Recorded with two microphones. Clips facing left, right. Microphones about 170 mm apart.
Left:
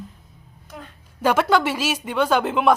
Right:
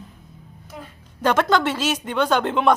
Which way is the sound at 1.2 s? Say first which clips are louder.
Even; 10° left (ahead or behind).